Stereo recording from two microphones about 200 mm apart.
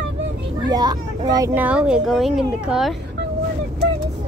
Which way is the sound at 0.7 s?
20° right (ahead or behind).